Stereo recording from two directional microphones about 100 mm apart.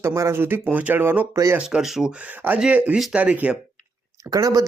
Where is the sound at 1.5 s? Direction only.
5° right (ahead or behind).